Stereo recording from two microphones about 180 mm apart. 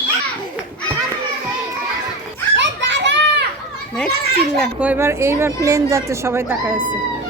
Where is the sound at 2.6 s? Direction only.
85° right.